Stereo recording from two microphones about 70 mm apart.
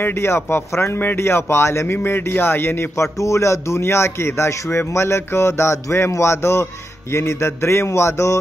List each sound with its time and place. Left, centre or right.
0.0 s speech: left